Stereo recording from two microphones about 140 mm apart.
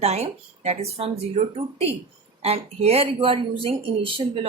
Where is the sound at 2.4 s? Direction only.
45° right (ahead or behind).